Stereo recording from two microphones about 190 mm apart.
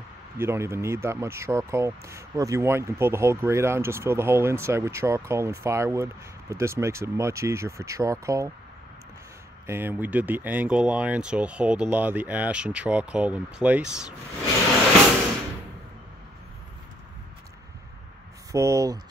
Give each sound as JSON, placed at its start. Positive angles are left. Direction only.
{"t": 0.4, "sound": "speech", "side_deg": -15}
{"t": 9.7, "sound": "speech", "side_deg": -10}
{"t": 18.5, "sound": "speech", "side_deg": -15}